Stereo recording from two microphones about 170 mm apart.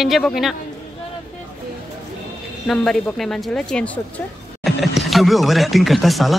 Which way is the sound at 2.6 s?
5° left (ahead or behind).